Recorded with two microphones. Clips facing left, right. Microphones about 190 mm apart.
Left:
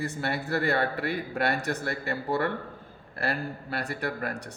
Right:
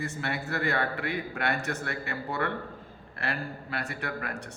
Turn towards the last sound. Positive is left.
turn(degrees=35)  # may be behind; listen again after turning